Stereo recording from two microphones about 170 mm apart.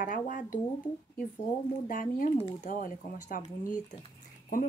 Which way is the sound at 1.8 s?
55° left (ahead or behind).